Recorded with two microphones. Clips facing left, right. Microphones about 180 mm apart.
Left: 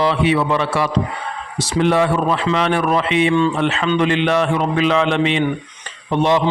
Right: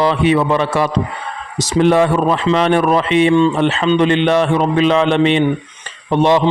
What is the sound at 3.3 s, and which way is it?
A man's voice, 25° right (ahead or behind).